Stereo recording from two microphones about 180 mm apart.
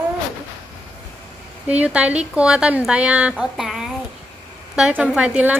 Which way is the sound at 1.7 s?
10° right (ahead or behind).